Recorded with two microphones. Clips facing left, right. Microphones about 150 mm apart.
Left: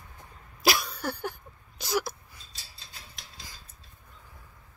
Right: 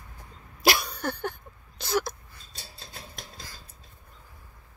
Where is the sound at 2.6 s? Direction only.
45° right (ahead or behind).